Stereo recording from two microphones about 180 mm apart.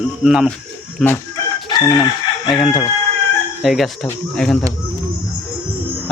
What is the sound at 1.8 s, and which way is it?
Chicken, 15° left (ahead or behind).